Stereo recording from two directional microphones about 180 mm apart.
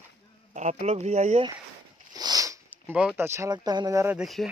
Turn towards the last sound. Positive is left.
turn(degrees=0)  # may be behind; listen again after turning